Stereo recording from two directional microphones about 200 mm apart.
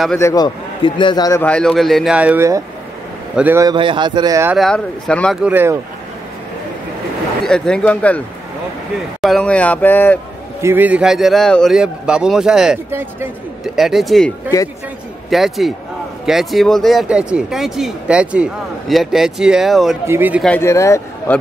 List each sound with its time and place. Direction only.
0.2 s a man's voice: 20° left (ahead or behind)
1.4 s a man's voice: 5° left (ahead or behind); by 3.7 s 10° right (ahead or behind)
3.7 s speech: 25° right (ahead or behind)
4.6 s speech: centre (ahead or behind)
7.4 s speech: 5° left (ahead or behind)
9.2 s speech: 5° left (ahead or behind)
10.6 s speech: 10° right (ahead or behind)
14.5 s speech: 20° left (ahead or behind)
15.2 s a man's voice: centre (ahead or behind)
20.4 s speech: 10° left (ahead or behind)